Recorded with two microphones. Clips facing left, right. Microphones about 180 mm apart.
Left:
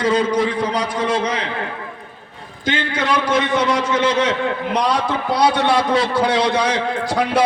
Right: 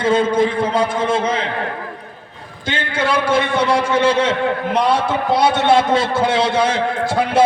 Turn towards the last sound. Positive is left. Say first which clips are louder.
# right 1 dB
turn(degrees=-25)  # may be behind; listen again after turning